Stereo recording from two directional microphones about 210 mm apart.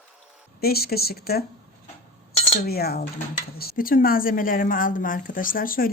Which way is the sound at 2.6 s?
50° left (ahead or behind).